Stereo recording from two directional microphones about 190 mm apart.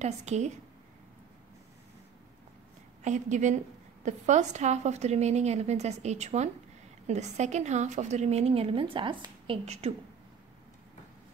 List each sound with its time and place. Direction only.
0.0 s a woman's voice: 35° right (ahead or behind)
3.0 s a woman's voice: 40° right (ahead or behind)